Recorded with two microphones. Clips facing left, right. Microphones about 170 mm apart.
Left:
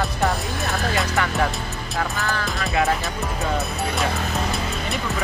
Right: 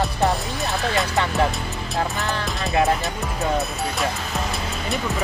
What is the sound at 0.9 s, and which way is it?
Speech, 20° right (ahead or behind).